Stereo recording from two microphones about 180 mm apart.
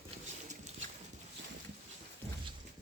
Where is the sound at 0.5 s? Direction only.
40° right (ahead or behind).